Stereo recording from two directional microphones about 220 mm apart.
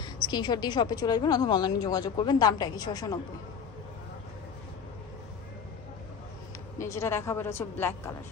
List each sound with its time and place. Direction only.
0.0 s a woman's voice: 20° left (ahead or behind)
6.8 s a woman's voice: 15° left (ahead or behind)